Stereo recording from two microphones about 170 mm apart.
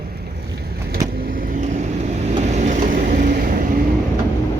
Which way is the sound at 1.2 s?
55° right (ahead or behind).